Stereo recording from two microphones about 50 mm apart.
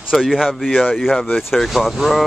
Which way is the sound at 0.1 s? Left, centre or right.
Centre.